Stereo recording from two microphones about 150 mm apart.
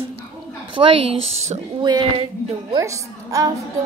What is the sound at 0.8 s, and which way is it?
Speech, 45° right (ahead or behind).